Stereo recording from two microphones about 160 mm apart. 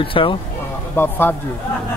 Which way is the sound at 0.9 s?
15° left (ahead or behind).